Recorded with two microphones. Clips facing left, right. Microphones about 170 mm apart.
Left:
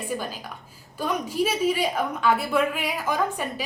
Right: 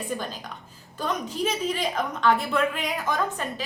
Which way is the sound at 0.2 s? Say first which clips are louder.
Left 1 dB; 10° left (ahead or behind).